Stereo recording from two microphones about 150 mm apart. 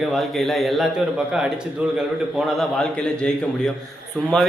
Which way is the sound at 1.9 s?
Centre (ahead or behind).